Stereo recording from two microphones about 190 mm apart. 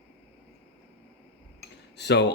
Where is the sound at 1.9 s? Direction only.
65° left (ahead or behind).